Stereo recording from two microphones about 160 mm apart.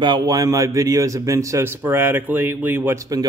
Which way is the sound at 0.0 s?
30° right (ahead or behind).